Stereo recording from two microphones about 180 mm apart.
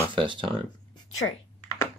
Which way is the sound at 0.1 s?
30° right (ahead or behind).